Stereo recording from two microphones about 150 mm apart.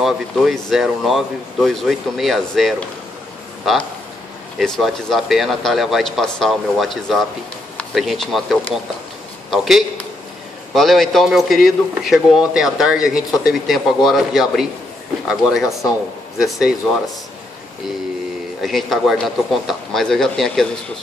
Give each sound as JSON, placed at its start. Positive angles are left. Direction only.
{"t": 0.0, "sound": "a man's voice", "side_deg": 0}
{"t": 18.6, "sound": "a man's voice", "side_deg": 0}